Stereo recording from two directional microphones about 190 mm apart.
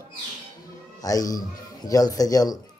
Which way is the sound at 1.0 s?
20° left (ahead or behind).